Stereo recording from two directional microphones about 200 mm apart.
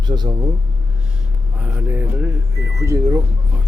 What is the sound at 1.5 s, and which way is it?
Speech, 10° right (ahead or behind).